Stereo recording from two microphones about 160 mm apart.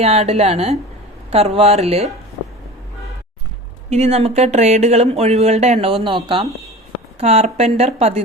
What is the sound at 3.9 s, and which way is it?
Speech, 40° right (ahead or behind).